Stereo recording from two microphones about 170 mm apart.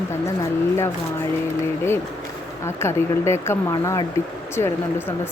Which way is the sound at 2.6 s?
15° left (ahead or behind).